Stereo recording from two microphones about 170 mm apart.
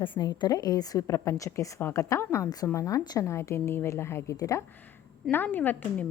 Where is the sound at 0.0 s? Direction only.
30° left (ahead or behind).